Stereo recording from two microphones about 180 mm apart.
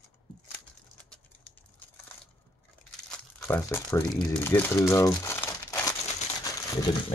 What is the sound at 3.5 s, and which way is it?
Speech, 15° left (ahead or behind).